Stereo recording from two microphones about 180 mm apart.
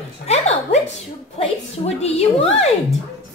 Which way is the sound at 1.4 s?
35° left (ahead or behind).